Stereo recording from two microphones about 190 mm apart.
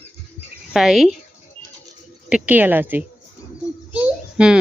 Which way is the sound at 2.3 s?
10° right (ahead or behind).